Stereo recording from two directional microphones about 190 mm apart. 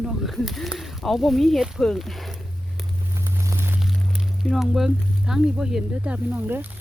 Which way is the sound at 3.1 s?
15° right (ahead or behind).